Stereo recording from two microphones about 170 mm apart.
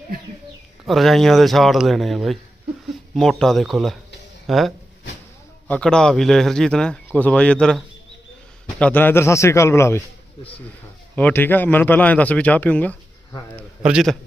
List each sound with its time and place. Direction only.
0.9 s speech: centre (ahead or behind)
8.8 s a man's voice: 10° left (ahead or behind)
11.1 s a man's voice: 10° left (ahead or behind)
13.8 s speech: centre (ahead or behind)